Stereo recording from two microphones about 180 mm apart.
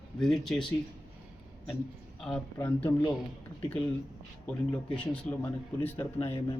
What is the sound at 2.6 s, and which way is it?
Speech, 15° left (ahead or behind).